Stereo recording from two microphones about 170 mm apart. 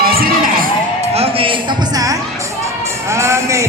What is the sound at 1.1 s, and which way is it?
Music, 35° right (ahead or behind).